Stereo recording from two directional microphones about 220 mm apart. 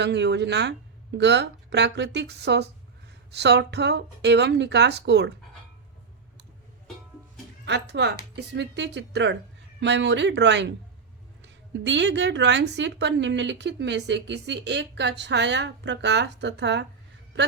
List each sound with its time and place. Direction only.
0.0 s a woman's voice: 50° right (ahead or behind)
7.6 s a woman's voice: 50° right (ahead or behind)